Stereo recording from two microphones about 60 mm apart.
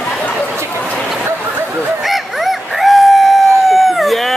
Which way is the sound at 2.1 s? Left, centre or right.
Centre.